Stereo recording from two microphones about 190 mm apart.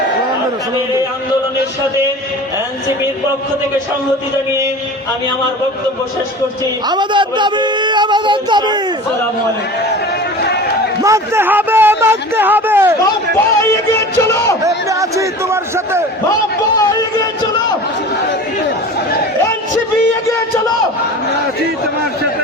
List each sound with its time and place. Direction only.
6.8 s speech: 25° right (ahead or behind)
11.0 s speech: 15° right (ahead or behind)
13.6 s music: 15° left (ahead or behind)
14.6 s speech: 15° right (ahead or behind)
16.7 s speech: 20° left (ahead or behind)